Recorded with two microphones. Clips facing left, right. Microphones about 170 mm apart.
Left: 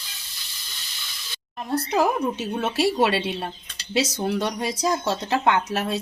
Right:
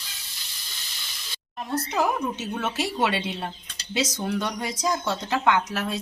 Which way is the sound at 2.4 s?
30° left (ahead or behind).